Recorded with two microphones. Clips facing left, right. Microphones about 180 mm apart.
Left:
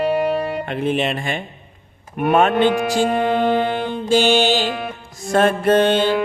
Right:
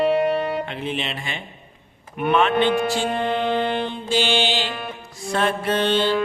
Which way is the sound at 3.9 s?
45° left (ahead or behind).